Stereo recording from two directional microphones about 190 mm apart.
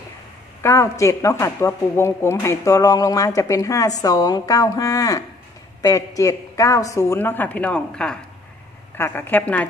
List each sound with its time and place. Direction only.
0.6 s speech: 15° left (ahead or behind)